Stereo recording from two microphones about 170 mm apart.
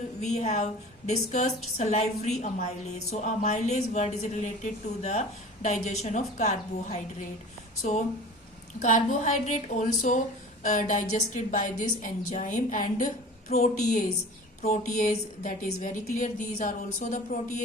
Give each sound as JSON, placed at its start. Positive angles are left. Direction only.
{"t": 0.2, "sound": "a woman's voice", "side_deg": 40}